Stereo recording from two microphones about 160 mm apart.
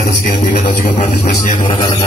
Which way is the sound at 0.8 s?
50° left (ahead or behind).